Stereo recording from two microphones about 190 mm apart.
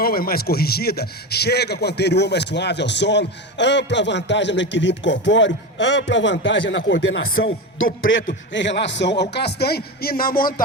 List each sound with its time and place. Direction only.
0.0 s a man's voice: 50° left (ahead or behind); by 8.2 s 90° left
8.5 s a man's voice: 70° left (ahead or behind); by 10.5 s 50° left (ahead or behind)